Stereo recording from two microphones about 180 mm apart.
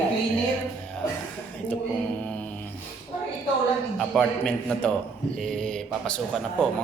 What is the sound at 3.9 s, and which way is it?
A man's voice, 5° left (ahead or behind).